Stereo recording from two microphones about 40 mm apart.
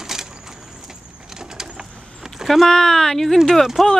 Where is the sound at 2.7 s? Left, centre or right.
Centre.